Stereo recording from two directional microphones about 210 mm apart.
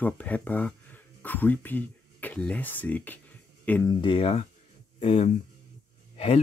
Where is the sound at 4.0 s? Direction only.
25° left (ahead or behind).